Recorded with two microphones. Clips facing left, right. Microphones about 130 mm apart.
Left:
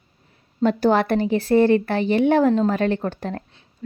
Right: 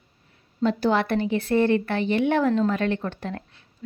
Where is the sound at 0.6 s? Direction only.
50° left (ahead or behind).